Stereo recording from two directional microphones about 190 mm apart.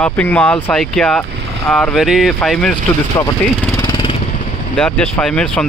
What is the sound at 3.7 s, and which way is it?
Jackhammer, 25° left (ahead or behind).